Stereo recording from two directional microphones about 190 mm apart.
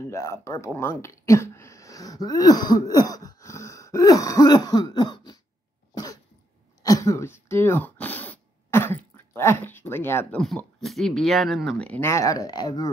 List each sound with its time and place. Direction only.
0.1 s speech: 15° left (ahead or behind)
6.8 s throat clearing: 15° left (ahead or behind)
10.4 s speech: centre (ahead or behind); by 12.9 s 20° left (ahead or behind)